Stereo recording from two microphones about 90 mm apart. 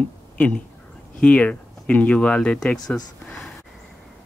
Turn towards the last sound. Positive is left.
turn(degrees=5)  # may be behind; listen again after turning